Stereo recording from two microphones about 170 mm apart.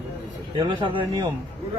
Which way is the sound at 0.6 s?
30° right (ahead or behind).